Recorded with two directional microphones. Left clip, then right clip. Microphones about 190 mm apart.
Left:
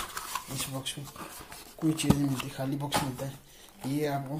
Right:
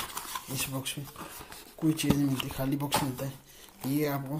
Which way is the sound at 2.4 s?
25° right (ahead or behind).